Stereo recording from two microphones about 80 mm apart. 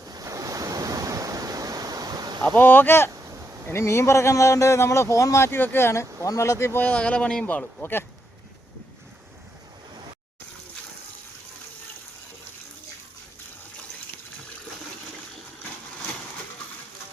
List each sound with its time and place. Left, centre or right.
0.1 s waves: right
2.6 s a man's voice: left
6.8 s speech: centre